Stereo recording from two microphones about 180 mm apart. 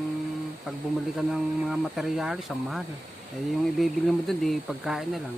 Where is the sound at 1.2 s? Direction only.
Centre (ahead or behind).